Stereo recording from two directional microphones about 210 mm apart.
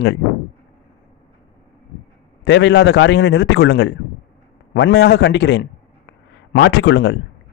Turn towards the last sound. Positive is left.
turn(degrees=55)  # may be behind; listen again after turning